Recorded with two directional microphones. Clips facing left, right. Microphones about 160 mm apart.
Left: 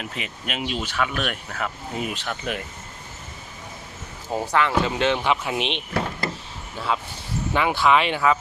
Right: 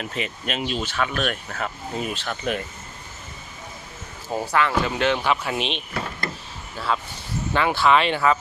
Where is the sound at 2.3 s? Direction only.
5° left (ahead or behind).